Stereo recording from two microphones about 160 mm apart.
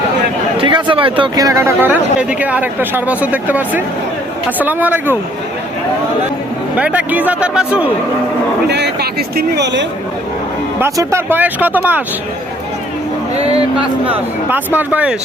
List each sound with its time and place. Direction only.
0.5 s speech: 30° right (ahead or behind); by 5.1 s 10° right (ahead or behind)
6.7 s speech: 10° right (ahead or behind)
8.6 s a man's voice: 90° right
10.8 s speech: 15° right (ahead or behind)
13.7 s speech: 10° right (ahead or behind)